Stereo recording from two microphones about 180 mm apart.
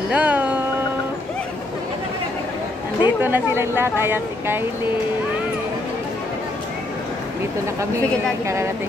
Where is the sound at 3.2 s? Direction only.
10° right (ahead or behind).